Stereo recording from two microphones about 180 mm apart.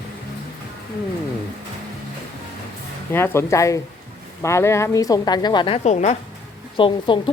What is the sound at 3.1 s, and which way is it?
A woman's voice, 15° left (ahead or behind).